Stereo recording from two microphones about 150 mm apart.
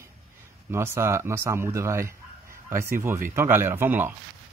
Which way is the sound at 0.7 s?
15° right (ahead or behind).